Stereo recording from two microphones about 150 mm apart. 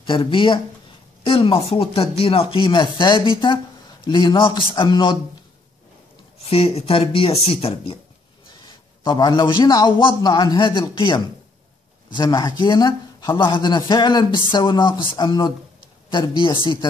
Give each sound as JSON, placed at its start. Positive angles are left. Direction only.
{"t": 0.0, "sound": "a man's voice", "side_deg": 35}
{"t": 6.4, "sound": "a man's voice", "side_deg": 40}